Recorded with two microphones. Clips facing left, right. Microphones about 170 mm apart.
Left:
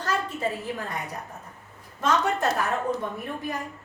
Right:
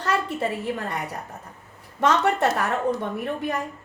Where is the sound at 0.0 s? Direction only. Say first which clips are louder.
Right 3 dB; 65° right (ahead or behind).